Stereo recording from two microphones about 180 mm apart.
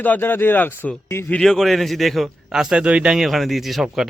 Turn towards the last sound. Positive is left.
turn(degrees=-5)  # may be behind; listen again after turning